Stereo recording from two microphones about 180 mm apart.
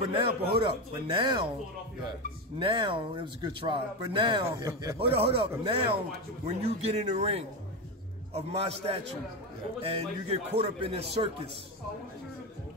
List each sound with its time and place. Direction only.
0.0 s speech: 30° right (ahead or behind)
2.6 s speech: 30° right (ahead or behind)
4.9 s speech: 30° right (ahead or behind)